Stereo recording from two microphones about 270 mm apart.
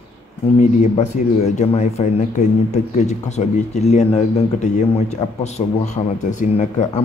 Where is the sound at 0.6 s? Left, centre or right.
Left.